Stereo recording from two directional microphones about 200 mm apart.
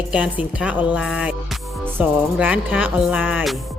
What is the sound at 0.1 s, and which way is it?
Music, 5° right (ahead or behind).